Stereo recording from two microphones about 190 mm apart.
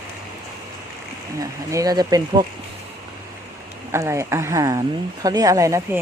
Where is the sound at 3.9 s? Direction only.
15° right (ahead or behind).